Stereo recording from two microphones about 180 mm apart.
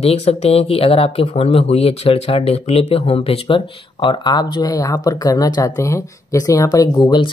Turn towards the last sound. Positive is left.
turn(degrees=25)  # may be behind; listen again after turning